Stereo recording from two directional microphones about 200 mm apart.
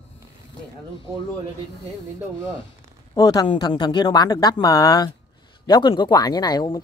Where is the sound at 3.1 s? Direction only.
20° left (ahead or behind).